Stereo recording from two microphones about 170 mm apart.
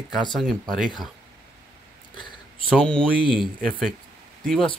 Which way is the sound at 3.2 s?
30° left (ahead or behind).